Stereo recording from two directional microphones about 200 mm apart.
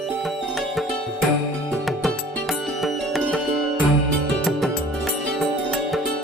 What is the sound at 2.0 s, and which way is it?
Music, centre (ahead or behind).